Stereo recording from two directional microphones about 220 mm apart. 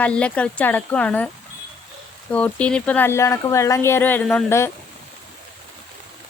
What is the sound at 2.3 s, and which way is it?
Speech, 5° left (ahead or behind).